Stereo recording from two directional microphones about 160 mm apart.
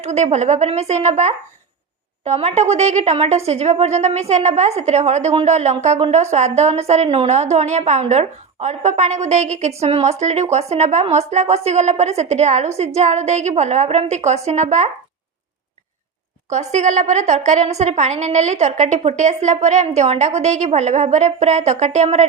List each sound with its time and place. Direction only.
0.0 s a woman's voice: 45° right (ahead or behind)
16.5 s a woman's voice: 45° right (ahead or behind)